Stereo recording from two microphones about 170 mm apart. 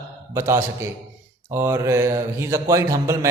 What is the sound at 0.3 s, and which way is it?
A man's voice, 15° right (ahead or behind).